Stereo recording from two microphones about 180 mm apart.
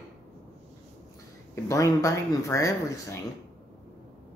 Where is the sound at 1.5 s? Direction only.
15° left (ahead or behind).